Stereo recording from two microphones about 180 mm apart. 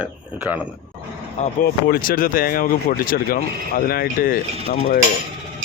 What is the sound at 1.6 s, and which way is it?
Speech, 55° left (ahead or behind).